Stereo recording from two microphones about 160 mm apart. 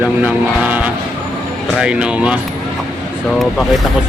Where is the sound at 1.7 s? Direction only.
5° right (ahead or behind).